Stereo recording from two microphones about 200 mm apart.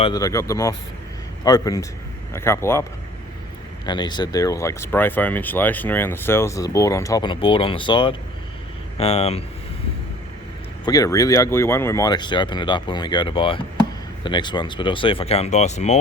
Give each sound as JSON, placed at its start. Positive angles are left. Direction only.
{"t": 0.0, "sound": "speech", "side_deg": 20}
{"t": 3.8, "sound": "speech", "side_deg": 20}
{"t": 10.8, "sound": "speech", "side_deg": 15}